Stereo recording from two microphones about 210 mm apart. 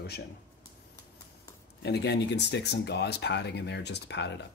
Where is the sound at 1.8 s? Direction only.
50° left (ahead or behind).